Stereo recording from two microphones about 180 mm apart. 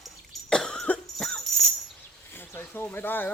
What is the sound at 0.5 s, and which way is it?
Cough, 5° left (ahead or behind).